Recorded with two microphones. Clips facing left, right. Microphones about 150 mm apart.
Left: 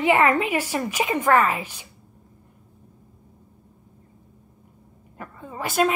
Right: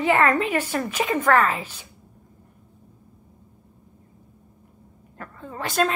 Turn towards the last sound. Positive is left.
turn(degrees=5)  # may be behind; listen again after turning